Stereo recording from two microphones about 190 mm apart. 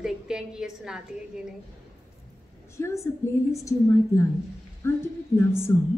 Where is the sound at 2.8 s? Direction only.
15° left (ahead or behind).